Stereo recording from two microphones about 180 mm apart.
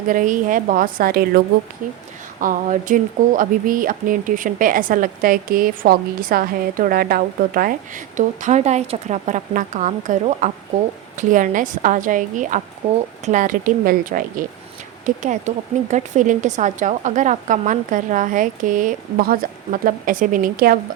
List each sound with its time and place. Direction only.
0.1 s speech: 45° right (ahead or behind)